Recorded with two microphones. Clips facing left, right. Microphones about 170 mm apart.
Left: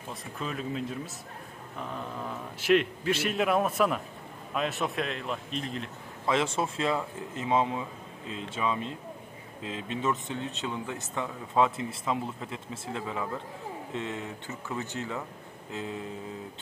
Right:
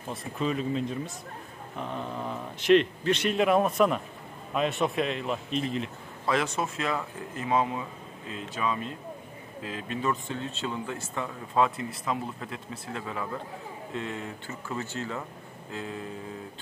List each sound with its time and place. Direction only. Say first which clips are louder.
0.1 s a man's voice: right 6 dB; centre (ahead or behind)
2.6 s a man's voice: right 3 dB; 5° left (ahead or behind)
6.2 s speech: even; 25° left (ahead or behind)